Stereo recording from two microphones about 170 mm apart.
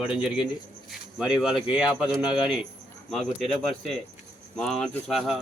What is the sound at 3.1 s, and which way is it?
Speech, centre (ahead or behind).